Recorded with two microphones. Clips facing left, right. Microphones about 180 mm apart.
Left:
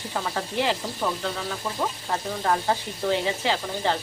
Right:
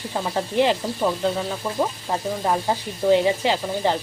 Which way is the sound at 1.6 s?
10° right (ahead or behind).